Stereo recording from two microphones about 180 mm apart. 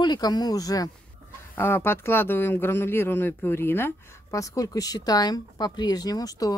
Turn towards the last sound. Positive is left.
turn(degrees=20)  # may be behind; listen again after turning